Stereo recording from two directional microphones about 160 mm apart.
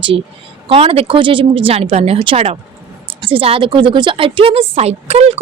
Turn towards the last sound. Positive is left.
turn(degrees=-40)  # may be behind; listen again after turning